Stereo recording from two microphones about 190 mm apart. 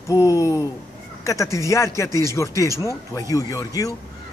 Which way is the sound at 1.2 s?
15° left (ahead or behind).